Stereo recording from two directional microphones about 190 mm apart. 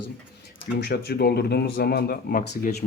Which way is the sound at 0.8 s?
55° left (ahead or behind).